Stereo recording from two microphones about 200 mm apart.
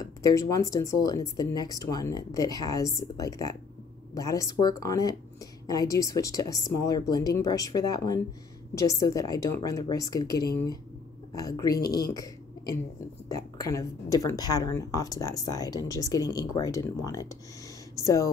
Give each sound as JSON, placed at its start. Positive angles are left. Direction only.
{"t": 0.0, "sound": "a woman's voice", "side_deg": 15}
{"t": 12.1, "sound": "a sound", "side_deg": 15}
{"t": 13.3, "sound": "a woman's voice", "side_deg": 15}